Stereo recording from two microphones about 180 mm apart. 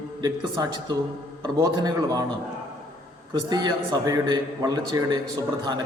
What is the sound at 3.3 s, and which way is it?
A man's voice, 25° right (ahead or behind).